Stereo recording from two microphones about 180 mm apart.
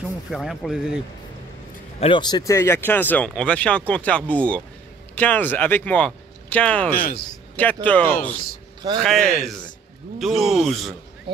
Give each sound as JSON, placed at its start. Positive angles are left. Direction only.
{"t": 0.3, "sound": "speech", "side_deg": 0}
{"t": 2.0, "sound": "speech", "side_deg": 30}
{"t": 7.0, "sound": "a man's voice", "side_deg": 55}
{"t": 7.5, "sound": "speech", "side_deg": 10}
{"t": 11.3, "sound": "speech", "side_deg": -30}